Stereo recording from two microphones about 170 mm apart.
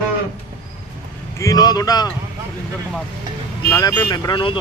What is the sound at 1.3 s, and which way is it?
Speech, 20° left (ahead or behind).